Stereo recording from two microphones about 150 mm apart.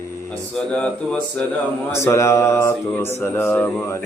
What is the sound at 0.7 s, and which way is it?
Mantra, 10° left (ahead or behind).